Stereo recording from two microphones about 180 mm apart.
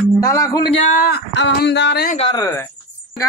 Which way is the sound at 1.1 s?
75° left (ahead or behind).